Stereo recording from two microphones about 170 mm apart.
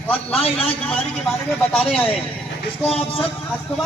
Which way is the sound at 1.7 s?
5° left (ahead or behind).